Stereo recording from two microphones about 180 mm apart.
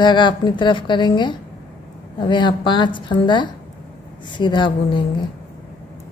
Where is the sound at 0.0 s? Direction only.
25° left (ahead or behind).